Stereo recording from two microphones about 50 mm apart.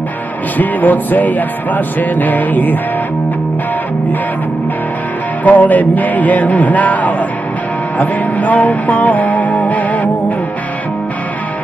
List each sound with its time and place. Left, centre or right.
0.6 s music: left
5.4 s music: left